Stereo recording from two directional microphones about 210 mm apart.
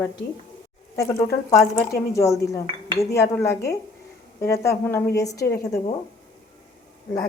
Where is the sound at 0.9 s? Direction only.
15° left (ahead or behind).